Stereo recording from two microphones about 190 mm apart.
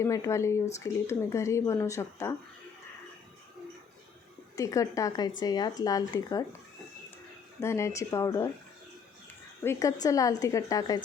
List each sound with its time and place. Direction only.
0.0 s a woman's voice: 15° left (ahead or behind)
4.5 s a woman's voice: 15° left (ahead or behind)
7.6 s a woman's voice: 15° left (ahead or behind)
9.6 s a woman's voice: 15° left (ahead or behind)